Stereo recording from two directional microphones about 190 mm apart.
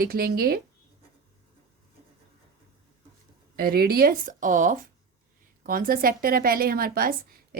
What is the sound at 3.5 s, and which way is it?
A woman's voice, 55° right (ahead or behind).